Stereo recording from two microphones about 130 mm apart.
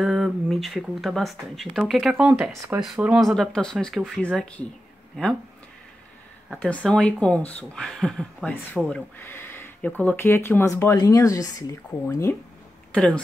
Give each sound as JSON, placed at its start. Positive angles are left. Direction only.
{"t": 0.0, "sound": "speech", "side_deg": -5}
{"t": 2.1, "sound": "speech", "side_deg": -15}
{"t": 2.8, "sound": "speech", "side_deg": -5}
{"t": 6.5, "sound": "speech", "side_deg": 5}
{"t": 9.2, "sound": "speech", "side_deg": 15}
{"t": 12.9, "sound": "speech", "side_deg": 5}